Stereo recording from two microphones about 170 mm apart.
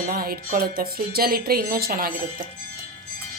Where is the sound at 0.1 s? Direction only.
60° right (ahead or behind).